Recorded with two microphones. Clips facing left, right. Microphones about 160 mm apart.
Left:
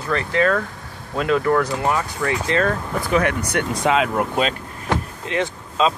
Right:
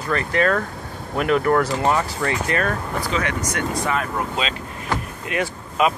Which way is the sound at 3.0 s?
55° left (ahead or behind).